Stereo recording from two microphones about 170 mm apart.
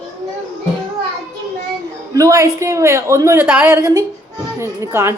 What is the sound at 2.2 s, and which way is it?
Speech, 20° right (ahead or behind).